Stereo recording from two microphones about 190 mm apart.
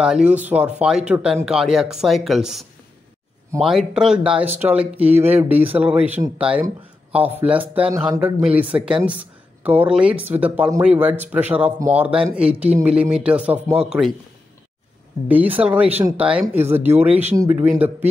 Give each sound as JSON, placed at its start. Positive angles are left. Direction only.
{"t": 0.0, "sound": "speech", "side_deg": -5}
{"t": 15.2, "sound": "speech", "side_deg": -10}